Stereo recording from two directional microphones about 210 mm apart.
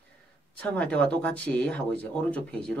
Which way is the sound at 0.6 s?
5° left (ahead or behind).